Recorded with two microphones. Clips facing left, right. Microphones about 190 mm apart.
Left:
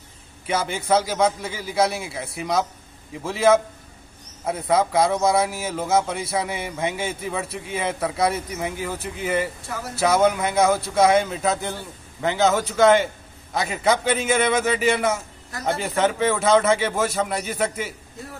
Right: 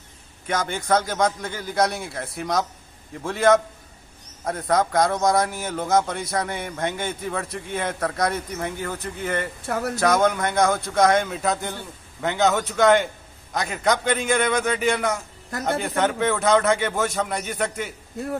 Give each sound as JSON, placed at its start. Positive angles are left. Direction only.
{"t": 0.5, "sound": "a man's voice", "side_deg": 5}
{"t": 9.7, "sound": "speech", "side_deg": -60}
{"t": 9.9, "sound": "a man's voice", "side_deg": 5}